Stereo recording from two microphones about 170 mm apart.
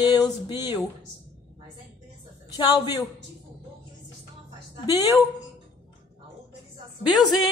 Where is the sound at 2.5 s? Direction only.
25° left (ahead or behind).